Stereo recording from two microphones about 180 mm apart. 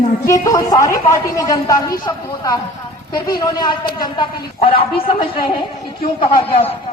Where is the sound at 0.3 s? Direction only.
20° left (ahead or behind).